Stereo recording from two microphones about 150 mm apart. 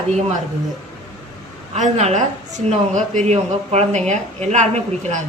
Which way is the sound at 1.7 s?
45° right (ahead or behind).